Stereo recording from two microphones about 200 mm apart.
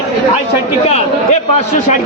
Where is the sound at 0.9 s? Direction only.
35° left (ahead or behind).